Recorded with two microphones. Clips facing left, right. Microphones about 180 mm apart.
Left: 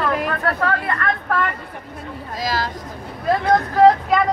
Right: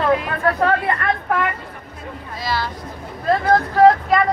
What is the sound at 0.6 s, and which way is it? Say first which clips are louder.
Speech: right 3 dB; 25° right (ahead or behind).